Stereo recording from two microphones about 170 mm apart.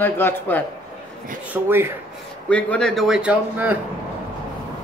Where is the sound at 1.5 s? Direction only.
10° right (ahead or behind).